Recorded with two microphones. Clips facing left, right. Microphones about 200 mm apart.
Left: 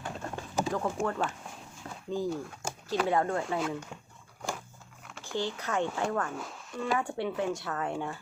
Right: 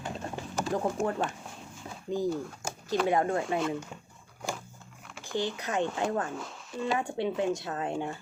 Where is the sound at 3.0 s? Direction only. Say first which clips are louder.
Right 1 dB; 20° right (ahead or behind).